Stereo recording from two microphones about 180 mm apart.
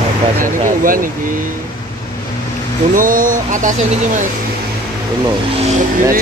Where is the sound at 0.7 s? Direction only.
50° right (ahead or behind).